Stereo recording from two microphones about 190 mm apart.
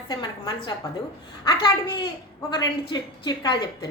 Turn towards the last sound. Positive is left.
turn(degrees=25)  # may be behind; listen again after turning